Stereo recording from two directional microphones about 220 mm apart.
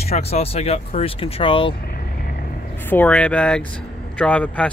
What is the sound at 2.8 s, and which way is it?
Speech, 10° left (ahead or behind).